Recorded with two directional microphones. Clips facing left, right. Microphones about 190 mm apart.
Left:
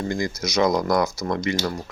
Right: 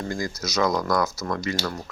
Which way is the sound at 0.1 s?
15° left (ahead or behind).